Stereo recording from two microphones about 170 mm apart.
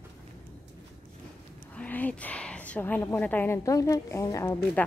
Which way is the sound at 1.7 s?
10° left (ahead or behind).